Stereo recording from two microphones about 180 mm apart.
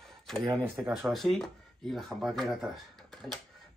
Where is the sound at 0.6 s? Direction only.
10° right (ahead or behind).